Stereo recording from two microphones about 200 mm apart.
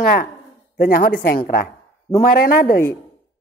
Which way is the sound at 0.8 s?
45° left (ahead or behind).